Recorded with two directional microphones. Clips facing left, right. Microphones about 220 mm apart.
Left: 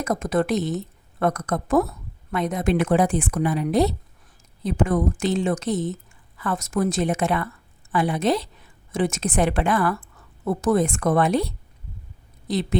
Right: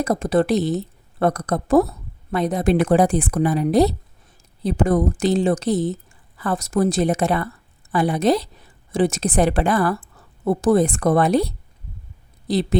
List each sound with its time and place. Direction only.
0.0 s a woman's voice: 30° right (ahead or behind)